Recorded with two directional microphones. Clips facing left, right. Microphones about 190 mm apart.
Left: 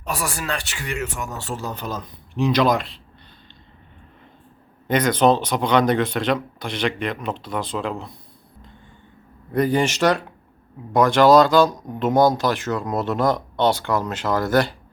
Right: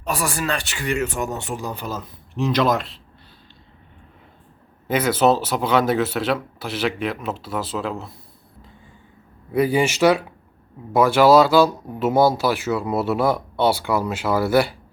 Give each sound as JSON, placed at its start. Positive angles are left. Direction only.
{"t": 0.1, "sound": "speech", "side_deg": -35}
{"t": 4.9, "sound": "speech", "side_deg": -5}
{"t": 9.5, "sound": "speech", "side_deg": -5}